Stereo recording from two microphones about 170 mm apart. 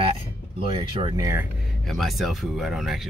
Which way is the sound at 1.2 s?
15° right (ahead or behind).